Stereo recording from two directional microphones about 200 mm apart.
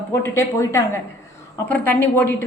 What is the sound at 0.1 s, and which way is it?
A woman's voice, 15° left (ahead or behind).